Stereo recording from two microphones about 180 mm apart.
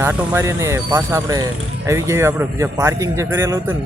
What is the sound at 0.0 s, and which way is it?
Speech, 10° right (ahead or behind).